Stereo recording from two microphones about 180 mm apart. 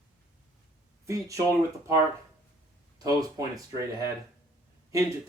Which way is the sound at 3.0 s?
20° right (ahead or behind).